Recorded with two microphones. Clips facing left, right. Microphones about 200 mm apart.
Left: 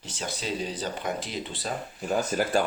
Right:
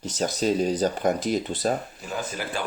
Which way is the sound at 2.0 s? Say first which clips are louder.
Left 9 dB; 45° left (ahead or behind).